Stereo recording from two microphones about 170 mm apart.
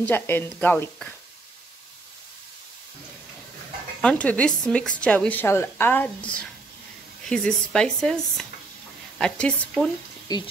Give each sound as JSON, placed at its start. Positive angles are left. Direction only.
{"t": 0.0, "sound": "speech", "side_deg": 10}
{"t": 4.0, "sound": "speech", "side_deg": 5}
{"t": 10.2, "sound": "speech", "side_deg": 25}